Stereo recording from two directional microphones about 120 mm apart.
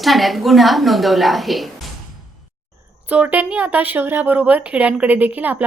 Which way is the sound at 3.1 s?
10° right (ahead or behind).